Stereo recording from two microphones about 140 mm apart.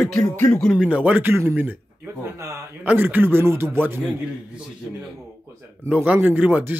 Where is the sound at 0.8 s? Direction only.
10° right (ahead or behind).